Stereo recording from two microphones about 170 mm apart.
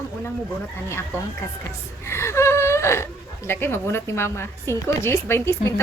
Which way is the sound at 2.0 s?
15° left (ahead or behind).